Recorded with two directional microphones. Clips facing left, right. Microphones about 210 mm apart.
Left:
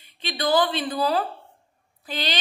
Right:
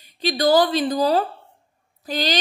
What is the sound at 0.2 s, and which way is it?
A woman's voice, 40° right (ahead or behind).